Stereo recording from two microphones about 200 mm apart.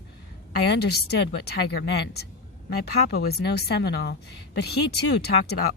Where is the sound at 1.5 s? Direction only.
55° left (ahead or behind).